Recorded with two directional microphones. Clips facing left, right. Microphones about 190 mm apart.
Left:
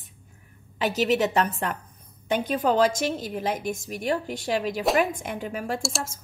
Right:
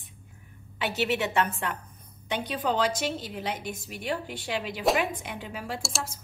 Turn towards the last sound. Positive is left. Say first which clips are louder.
# left 4 dB
turn(degrees=0)  # may be behind; listen again after turning